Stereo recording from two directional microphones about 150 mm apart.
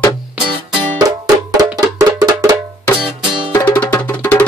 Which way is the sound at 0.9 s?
25° right (ahead or behind).